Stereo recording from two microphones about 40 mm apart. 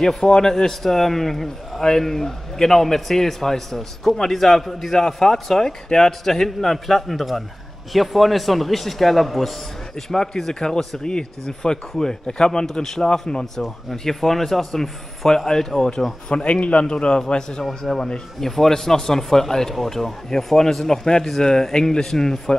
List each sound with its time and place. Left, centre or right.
0.1 s a man's voice: centre